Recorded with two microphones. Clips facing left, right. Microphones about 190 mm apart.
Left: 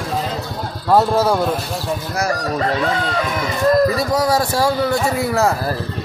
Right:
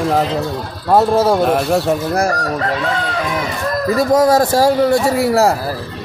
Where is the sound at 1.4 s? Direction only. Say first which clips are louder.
Right 7 dB; 65° right (ahead or behind).